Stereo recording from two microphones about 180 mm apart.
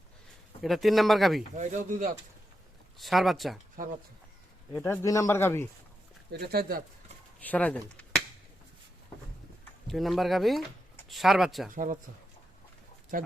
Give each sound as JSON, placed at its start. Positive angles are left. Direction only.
{"t": 0.6, "sound": "speech", "side_deg": 0}
{"t": 1.5, "sound": "speech", "side_deg": -45}
{"t": 3.0, "sound": "speech", "side_deg": 0}
{"t": 4.7, "sound": "speech", "side_deg": 10}
{"t": 6.4, "sound": "speech", "side_deg": -55}
{"t": 7.4, "sound": "speech", "side_deg": 10}
{"t": 9.8, "sound": "speech", "side_deg": 0}
{"t": 11.7, "sound": "speech", "side_deg": -50}
{"t": 13.1, "sound": "speech", "side_deg": -50}